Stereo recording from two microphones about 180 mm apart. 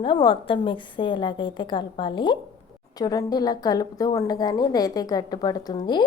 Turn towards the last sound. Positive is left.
turn(degrees=25)  # may be behind; listen again after turning